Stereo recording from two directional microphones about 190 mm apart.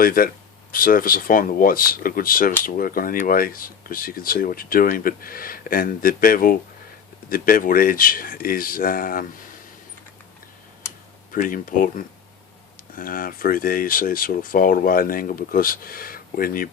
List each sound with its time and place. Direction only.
0.0 s speech: 50° left (ahead or behind)
11.3 s speech: 45° left (ahead or behind)